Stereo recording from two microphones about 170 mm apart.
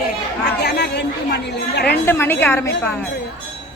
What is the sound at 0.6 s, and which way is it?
Chatter, 80° left.